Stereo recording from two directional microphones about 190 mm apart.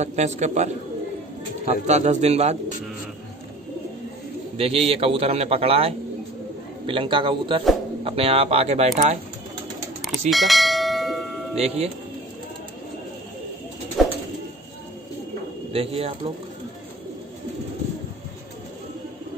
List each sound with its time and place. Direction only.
0.0 s a man's voice: 35° right (ahead or behind)
1.7 s a man's voice: 35° right (ahead or behind)
4.6 s a man's voice: 35° right (ahead or behind)
10.3 s bell: centre (ahead or behind)
11.5 s a man's voice: 35° right (ahead or behind)
14.0 s pigeon: centre (ahead or behind)
15.7 s a man's voice: 30° right (ahead or behind)